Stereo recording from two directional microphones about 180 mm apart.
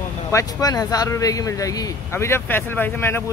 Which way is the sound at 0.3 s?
20° left (ahead or behind).